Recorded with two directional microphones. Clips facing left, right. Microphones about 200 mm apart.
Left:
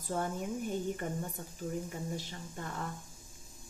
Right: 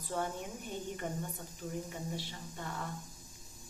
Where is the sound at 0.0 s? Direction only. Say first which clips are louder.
Left 2 dB; 45° left (ahead or behind).